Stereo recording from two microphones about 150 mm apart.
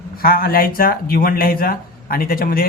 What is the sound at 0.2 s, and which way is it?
Speech, 75° left (ahead or behind).